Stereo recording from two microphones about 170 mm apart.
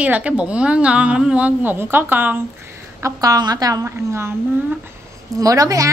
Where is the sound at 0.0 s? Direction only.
10° right (ahead or behind).